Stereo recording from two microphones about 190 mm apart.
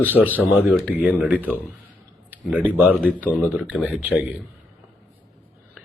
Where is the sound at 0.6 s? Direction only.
10° right (ahead or behind).